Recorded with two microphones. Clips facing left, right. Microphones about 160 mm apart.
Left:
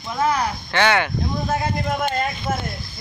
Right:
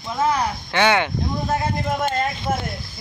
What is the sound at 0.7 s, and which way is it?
Speech, 15° right (ahead or behind).